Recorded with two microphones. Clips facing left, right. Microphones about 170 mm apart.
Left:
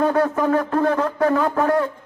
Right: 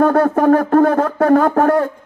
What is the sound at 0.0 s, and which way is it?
Speech, 50° right (ahead or behind).